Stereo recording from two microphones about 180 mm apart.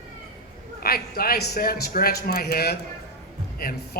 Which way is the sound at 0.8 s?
55° left (ahead or behind).